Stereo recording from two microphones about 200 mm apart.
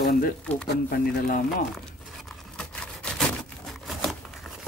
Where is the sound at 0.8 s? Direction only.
45° left (ahead or behind).